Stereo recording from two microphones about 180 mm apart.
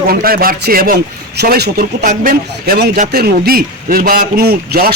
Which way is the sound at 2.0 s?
55° right (ahead or behind).